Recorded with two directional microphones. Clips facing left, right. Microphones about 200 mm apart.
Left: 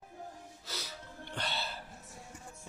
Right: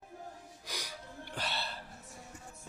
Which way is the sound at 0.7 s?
15° right (ahead or behind).